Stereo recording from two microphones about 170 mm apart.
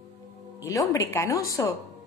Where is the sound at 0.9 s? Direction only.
15° left (ahead or behind).